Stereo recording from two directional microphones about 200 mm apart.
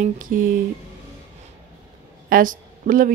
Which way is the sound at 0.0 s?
45° right (ahead or behind).